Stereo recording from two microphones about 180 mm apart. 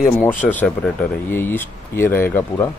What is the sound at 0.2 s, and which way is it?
Speech, 10° left (ahead or behind).